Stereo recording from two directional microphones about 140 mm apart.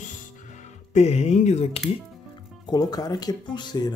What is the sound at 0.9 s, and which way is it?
Speech, 50° left (ahead or behind).